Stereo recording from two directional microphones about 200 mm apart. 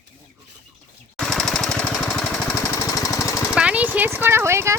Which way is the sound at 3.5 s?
5° right (ahead or behind).